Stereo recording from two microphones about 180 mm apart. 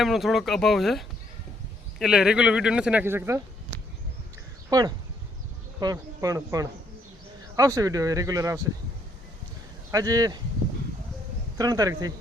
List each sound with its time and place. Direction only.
0.0 s speech: centre (ahead or behind)
4.7 s speech: 20° right (ahead or behind)
9.9 s speech: 20° right (ahead or behind)
11.5 s speech: 20° right (ahead or behind)